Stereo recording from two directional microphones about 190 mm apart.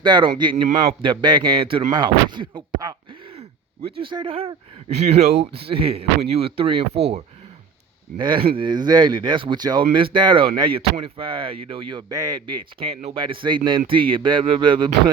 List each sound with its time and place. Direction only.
0.0 s speech: 25° right (ahead or behind)
4.0 s speech: 25° right (ahead or behind)
8.2 s speech: 25° right (ahead or behind)